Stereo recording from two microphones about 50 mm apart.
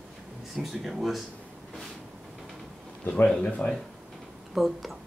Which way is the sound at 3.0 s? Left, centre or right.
Left.